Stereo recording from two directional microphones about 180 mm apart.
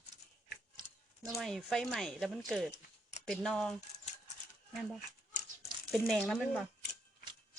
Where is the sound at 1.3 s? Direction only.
Centre (ahead or behind).